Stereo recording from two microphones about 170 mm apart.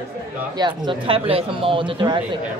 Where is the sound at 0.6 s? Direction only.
25° right (ahead or behind).